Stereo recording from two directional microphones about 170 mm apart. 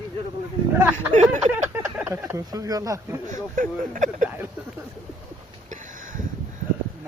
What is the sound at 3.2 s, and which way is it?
Speech, 50° right (ahead or behind).